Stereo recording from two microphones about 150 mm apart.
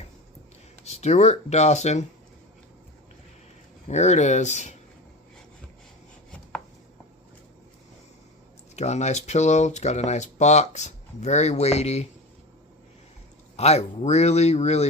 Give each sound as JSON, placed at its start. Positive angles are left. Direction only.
{"t": 0.9, "sound": "speech", "side_deg": 50}
{"t": 3.8, "sound": "speech", "side_deg": 50}
{"t": 8.7, "sound": "speech", "side_deg": 50}
{"t": 13.6, "sound": "speech", "side_deg": 45}